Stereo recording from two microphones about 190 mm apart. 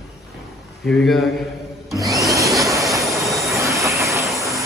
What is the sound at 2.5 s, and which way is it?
Train, 15° right (ahead or behind).